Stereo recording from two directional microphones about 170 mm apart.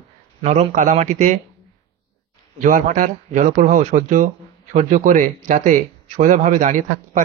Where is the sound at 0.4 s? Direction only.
40° right (ahead or behind).